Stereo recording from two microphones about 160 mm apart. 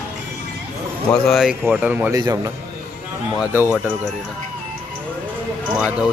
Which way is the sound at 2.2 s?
25° right (ahead or behind).